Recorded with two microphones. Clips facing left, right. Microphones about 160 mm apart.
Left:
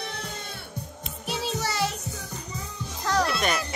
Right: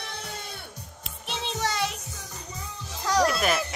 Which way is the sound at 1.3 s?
5° left (ahead or behind).